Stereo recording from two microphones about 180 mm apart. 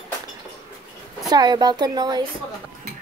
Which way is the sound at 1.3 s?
25° right (ahead or behind).